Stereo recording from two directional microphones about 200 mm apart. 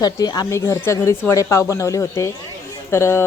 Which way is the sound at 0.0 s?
20° left (ahead or behind).